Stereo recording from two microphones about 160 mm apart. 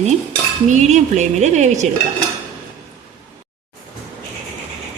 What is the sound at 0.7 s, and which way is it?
A woman's voice, 50° right (ahead or behind).